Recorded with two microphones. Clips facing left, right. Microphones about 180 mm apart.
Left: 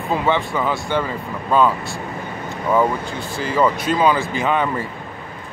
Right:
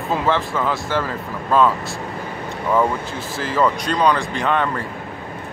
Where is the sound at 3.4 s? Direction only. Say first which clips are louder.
Left 1 dB; centre (ahead or behind).